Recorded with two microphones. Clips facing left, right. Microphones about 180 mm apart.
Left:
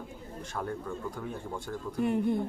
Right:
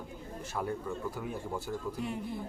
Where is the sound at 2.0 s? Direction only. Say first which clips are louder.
Left 9 dB; 55° left (ahead or behind).